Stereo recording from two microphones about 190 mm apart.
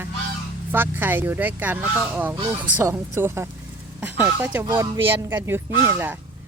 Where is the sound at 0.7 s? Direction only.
10° right (ahead or behind).